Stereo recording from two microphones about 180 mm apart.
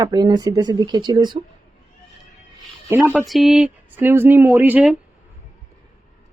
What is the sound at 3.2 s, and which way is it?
Speech, centre (ahead or behind).